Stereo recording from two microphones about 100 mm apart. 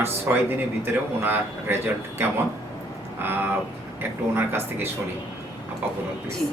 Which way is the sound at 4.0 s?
20° right (ahead or behind).